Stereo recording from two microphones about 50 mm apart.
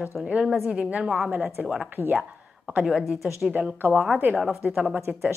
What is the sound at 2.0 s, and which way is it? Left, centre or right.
Speech, left.